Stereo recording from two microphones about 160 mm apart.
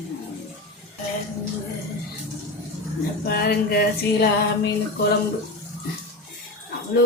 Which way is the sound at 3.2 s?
75° left (ahead or behind).